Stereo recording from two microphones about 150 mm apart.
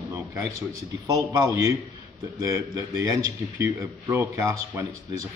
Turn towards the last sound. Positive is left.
turn(degrees=-20)  # may be behind; listen again after turning